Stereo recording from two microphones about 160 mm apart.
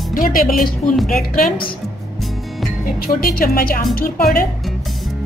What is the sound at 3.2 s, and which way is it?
Speech, 65° left (ahead or behind).